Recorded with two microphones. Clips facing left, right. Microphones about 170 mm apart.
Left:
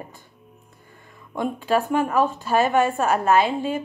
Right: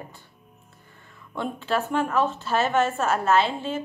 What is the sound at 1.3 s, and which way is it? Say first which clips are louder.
A woman's voice: left 4 dB; 10° left (ahead or behind).